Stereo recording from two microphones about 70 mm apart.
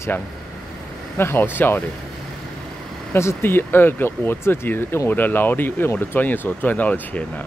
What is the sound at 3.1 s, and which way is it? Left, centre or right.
Speech, left.